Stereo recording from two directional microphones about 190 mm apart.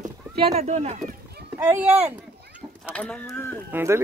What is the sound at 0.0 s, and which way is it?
Speech, 35° right (ahead or behind).